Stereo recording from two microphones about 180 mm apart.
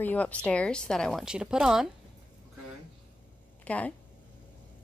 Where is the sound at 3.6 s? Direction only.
5° left (ahead or behind).